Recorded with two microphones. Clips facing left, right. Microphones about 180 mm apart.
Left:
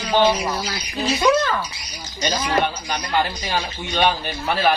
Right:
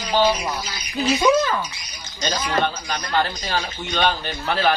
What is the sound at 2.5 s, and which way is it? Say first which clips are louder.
A man's voice: left 1 dB; 15° left (ahead or behind).